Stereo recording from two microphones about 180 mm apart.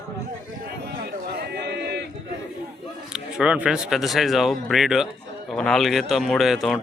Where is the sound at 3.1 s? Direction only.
5° right (ahead or behind).